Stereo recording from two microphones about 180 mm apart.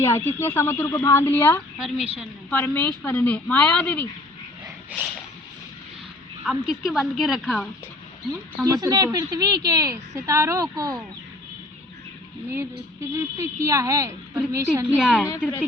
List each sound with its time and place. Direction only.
0.0 s a woman's voice: 15° left (ahead or behind)
1.8 s a woman's voice: centre (ahead or behind)
6.4 s a woman's voice: centre (ahead or behind)
8.6 s a woman's voice: 20° right (ahead or behind)
12.5 s a woman's voice: 15° right (ahead or behind)